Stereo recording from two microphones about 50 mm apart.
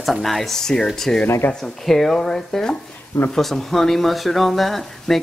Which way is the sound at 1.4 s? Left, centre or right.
Left.